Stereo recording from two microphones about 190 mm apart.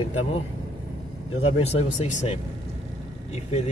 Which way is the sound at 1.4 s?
35° left (ahead or behind).